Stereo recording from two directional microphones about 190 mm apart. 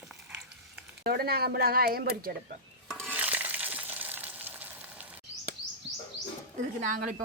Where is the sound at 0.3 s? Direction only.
5° right (ahead or behind).